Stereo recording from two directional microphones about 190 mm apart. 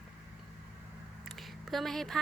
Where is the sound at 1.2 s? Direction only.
Centre (ahead or behind).